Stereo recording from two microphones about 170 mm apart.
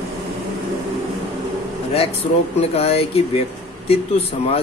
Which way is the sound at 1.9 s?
35° left (ahead or behind).